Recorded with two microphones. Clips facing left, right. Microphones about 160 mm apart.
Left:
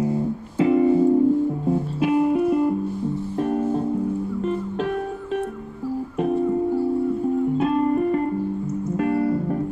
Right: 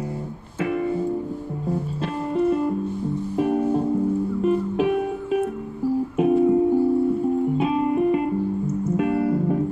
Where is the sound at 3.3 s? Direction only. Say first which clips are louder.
Right 2 dB; 5° right (ahead or behind).